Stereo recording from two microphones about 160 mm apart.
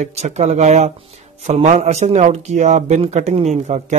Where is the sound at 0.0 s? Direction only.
45° right (ahead or behind).